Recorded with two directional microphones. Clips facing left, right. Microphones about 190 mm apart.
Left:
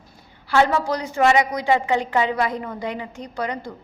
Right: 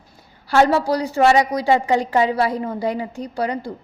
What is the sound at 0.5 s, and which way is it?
A woman's voice, 35° right (ahead or behind).